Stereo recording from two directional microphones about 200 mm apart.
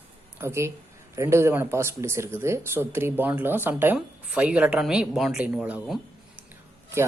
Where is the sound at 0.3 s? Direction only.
15° right (ahead or behind).